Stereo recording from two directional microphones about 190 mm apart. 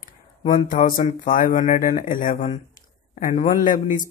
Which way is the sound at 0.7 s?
45° left (ahead or behind).